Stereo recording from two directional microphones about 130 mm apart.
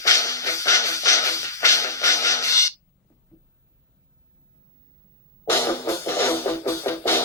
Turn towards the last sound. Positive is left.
turn(degrees=20)  # may be behind; listen again after turning